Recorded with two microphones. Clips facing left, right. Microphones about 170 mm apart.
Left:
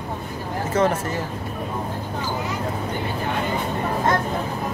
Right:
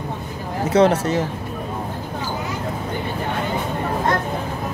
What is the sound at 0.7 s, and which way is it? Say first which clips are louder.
Speech: right 6 dB; 85° right.